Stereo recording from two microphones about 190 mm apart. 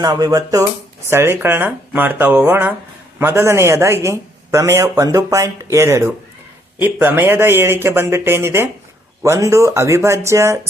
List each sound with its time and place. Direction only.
0.0 s a man's voice: 20° right (ahead or behind)